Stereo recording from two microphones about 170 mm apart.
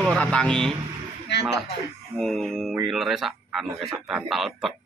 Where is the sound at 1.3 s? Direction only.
85° left.